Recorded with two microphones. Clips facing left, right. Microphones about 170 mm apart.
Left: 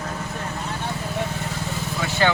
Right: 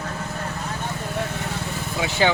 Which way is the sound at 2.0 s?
15° right (ahead or behind).